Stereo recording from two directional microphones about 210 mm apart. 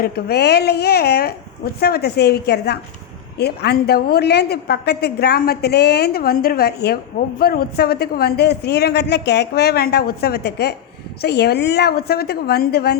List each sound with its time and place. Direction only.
0.0 s a woman's voice: 50° left (ahead or behind)